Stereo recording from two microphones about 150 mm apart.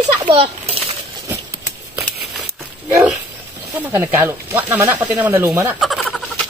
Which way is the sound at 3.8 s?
15° right (ahead or behind).